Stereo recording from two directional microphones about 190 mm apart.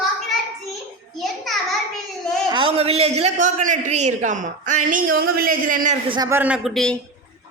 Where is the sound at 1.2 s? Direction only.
Centre (ahead or behind).